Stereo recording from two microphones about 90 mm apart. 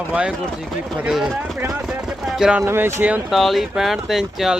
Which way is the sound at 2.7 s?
25° right (ahead or behind).